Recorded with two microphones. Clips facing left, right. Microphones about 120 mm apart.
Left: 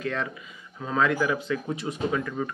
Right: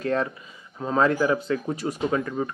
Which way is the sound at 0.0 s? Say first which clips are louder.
Right 5 dB; 40° right (ahead or behind).